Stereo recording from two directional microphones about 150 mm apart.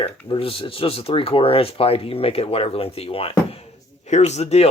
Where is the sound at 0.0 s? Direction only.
40° left (ahead or behind).